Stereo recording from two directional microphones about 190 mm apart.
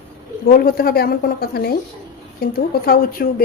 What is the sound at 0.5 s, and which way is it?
A woman's voice, 50° left (ahead or behind).